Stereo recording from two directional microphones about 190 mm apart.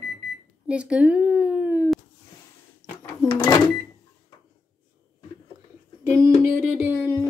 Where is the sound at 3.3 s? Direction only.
15° left (ahead or behind).